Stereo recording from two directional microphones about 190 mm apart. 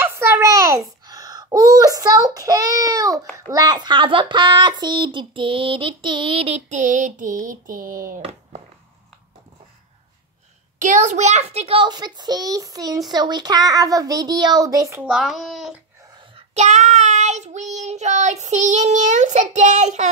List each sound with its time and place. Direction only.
0.0 s a sound: 15° right (ahead or behind)
3.5 s speech: 20° right (ahead or behind); by 8.2 s 45° right (ahead or behind)
8.2 s a sound: 30° right (ahead or behind)
10.8 s speech: 40° right (ahead or behind); by 15.0 s 15° right (ahead or behind)
15.0 s a child's voice: centre (ahead or behind)
16.3 s child singing: 40° right (ahead or behind)